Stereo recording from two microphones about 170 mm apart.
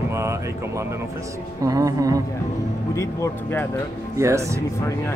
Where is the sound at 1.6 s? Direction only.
20° right (ahead or behind).